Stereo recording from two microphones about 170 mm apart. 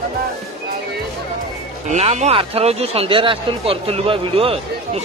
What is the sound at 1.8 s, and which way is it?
Speech, 40° right (ahead or behind).